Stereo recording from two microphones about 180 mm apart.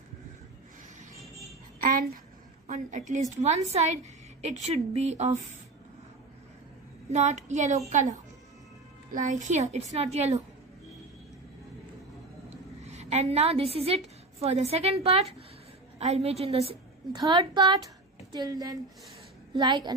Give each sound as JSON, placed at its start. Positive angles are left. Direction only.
{"t": 1.8, "sound": "a child's voice", "side_deg": -50}
{"t": 7.1, "sound": "a woman's voice", "side_deg": -40}
{"t": 12.4, "sound": "a woman's voice", "side_deg": -35}